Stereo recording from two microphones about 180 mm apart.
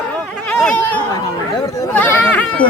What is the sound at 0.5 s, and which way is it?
Speech, 5° left (ahead or behind).